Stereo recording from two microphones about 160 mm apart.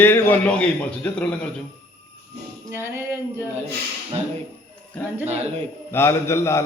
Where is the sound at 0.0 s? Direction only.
15° left (ahead or behind).